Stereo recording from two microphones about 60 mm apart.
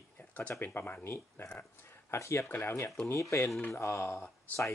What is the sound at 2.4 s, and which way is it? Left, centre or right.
Speech, left.